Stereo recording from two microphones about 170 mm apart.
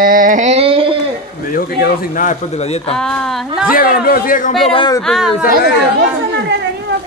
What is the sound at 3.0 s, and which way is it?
Speech, 5° left (ahead or behind).